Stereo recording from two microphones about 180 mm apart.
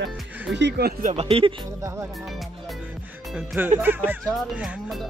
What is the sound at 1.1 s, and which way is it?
Speech, 35° right (ahead or behind).